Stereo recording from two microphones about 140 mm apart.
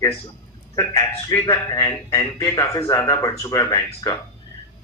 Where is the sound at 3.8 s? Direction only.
35° left (ahead or behind).